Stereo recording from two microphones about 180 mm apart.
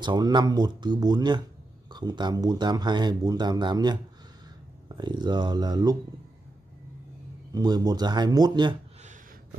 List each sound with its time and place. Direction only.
0.0 s speech: 25° right (ahead or behind)
7.5 s speech: 20° right (ahead or behind)